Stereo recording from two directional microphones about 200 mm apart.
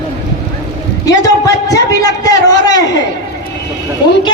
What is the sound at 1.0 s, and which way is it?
A man's voice, 15° left (ahead or behind).